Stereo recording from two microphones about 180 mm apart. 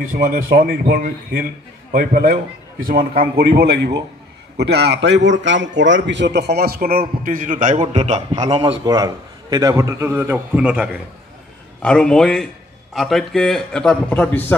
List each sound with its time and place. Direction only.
0.1 s a man's voice: 55° right (ahead or behind); by 8.7 s 35° right (ahead or behind)
8.8 s a man's voice: 20° right (ahead or behind)
11.8 s a man's voice: 5° left (ahead or behind)